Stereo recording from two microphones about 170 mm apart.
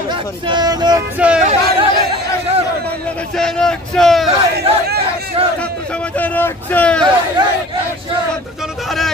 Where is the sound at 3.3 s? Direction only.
5° left (ahead or behind).